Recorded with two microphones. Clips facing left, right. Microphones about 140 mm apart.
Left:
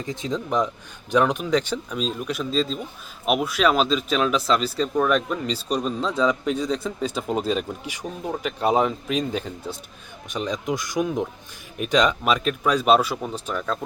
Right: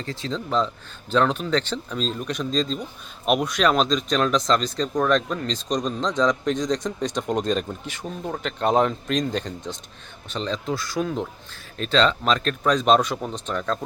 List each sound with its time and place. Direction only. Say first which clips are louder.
0.0 s speech: left 2 dB; 15° left (ahead or behind)